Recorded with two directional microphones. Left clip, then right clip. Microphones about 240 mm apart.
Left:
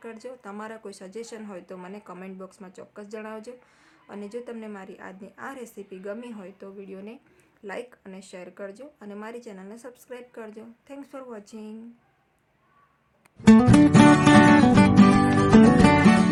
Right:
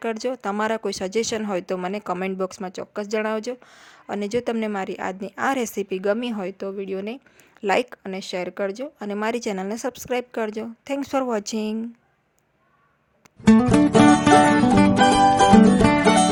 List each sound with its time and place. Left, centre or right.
0.0 s speech: right
13.4 s music: centre